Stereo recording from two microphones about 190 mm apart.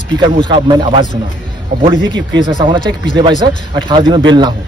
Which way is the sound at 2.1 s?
25° right (ahead or behind).